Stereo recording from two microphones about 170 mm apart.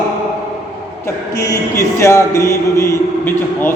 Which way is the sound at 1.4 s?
15° left (ahead or behind).